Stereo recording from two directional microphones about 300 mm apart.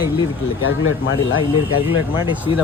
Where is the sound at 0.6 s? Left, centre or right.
Left.